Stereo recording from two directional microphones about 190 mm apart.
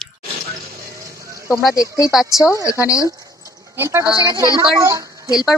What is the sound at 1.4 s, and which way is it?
Speech, 15° left (ahead or behind).